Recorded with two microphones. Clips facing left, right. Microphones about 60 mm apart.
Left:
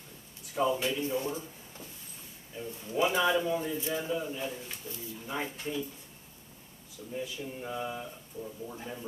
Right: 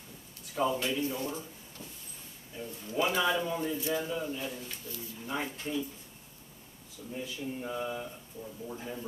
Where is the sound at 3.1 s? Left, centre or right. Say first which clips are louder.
Left 2 dB; centre.